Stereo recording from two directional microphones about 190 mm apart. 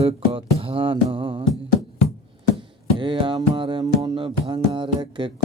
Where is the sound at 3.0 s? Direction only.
25° right (ahead or behind).